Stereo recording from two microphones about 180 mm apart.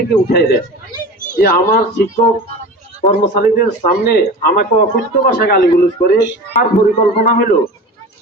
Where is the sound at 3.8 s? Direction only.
60° left (ahead or behind).